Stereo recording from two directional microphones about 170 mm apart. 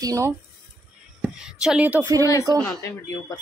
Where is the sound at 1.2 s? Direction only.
5° right (ahead or behind).